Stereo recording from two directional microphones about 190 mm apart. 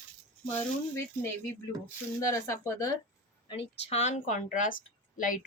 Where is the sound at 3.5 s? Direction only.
35° left (ahead or behind).